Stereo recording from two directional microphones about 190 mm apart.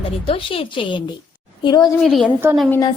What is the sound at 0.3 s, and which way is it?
A woman's voice, 30° left (ahead or behind).